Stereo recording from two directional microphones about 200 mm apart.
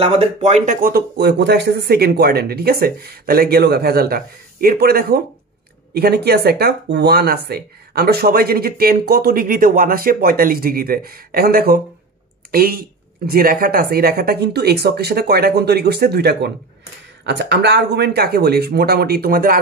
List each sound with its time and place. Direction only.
0.0 s speech: 35° right (ahead or behind)